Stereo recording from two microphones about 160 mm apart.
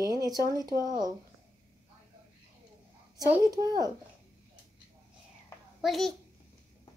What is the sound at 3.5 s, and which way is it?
Speech, 25° right (ahead or behind).